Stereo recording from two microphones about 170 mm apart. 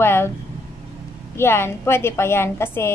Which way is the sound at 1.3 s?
15° left (ahead or behind).